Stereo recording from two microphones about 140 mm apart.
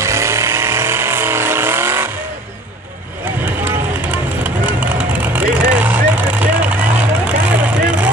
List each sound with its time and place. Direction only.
0.0 s vehicle: 20° right (ahead or behind)
3.6 s vehicle: 15° right (ahead or behind)